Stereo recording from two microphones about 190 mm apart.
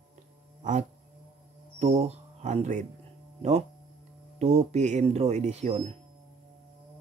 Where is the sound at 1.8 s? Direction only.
35° right (ahead or behind).